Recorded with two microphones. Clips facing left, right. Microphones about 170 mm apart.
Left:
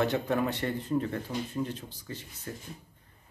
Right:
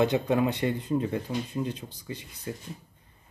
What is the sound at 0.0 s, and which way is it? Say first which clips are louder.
Speech: right 4 dB; 15° right (ahead or behind).